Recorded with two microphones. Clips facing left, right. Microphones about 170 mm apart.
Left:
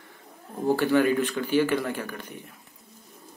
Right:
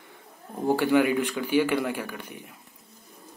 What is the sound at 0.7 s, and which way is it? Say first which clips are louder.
Speech: even; 15° right (ahead or behind).